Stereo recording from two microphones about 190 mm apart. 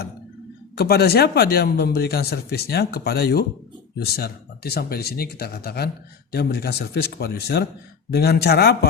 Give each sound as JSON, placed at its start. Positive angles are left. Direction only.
{"t": 0.8, "sound": "speech", "side_deg": 55}